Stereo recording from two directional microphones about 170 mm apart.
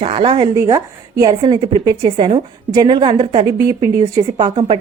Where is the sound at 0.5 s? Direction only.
20° right (ahead or behind).